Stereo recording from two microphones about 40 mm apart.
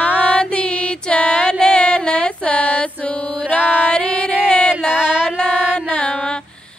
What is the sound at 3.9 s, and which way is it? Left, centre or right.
Female singing, left.